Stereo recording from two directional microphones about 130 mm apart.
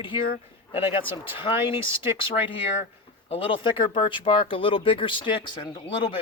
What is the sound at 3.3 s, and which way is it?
Speech, 45° left (ahead or behind).